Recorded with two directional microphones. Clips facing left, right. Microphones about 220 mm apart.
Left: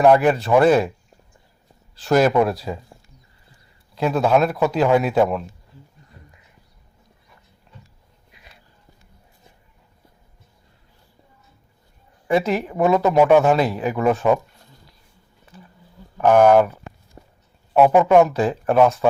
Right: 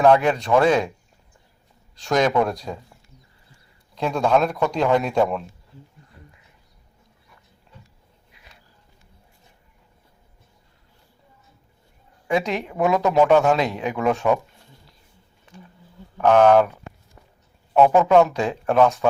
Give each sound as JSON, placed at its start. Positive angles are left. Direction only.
{"t": 0.0, "sound": "a man's voice", "side_deg": 5}
{"t": 2.0, "sound": "a man's voice", "side_deg": 5}
{"t": 3.9, "sound": "a man's voice", "side_deg": 5}
{"t": 12.3, "sound": "a man's voice", "side_deg": 5}
{"t": 16.1, "sound": "speech", "side_deg": 10}
{"t": 17.2, "sound": "a sound", "side_deg": 30}
{"t": 17.7, "sound": "a man's voice", "side_deg": 10}